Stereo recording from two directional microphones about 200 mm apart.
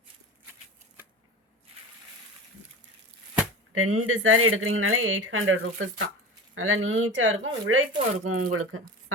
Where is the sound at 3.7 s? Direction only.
90° right.